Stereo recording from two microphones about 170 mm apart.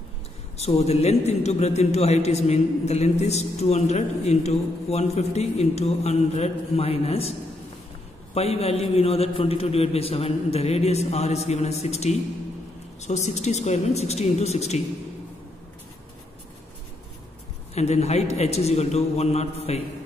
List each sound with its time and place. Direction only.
0.6 s a man's voice: 40° left (ahead or behind)
8.4 s a man's voice: 40° left (ahead or behind)
17.7 s a man's voice: 40° left (ahead or behind)